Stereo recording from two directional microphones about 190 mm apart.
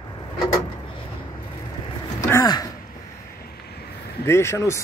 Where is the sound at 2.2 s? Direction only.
15° left (ahead or behind).